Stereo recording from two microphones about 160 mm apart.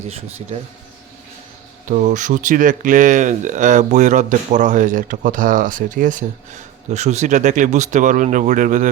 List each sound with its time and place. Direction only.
0.1 s speech: 40° right (ahead or behind)
1.9 s speech: 50° right (ahead or behind)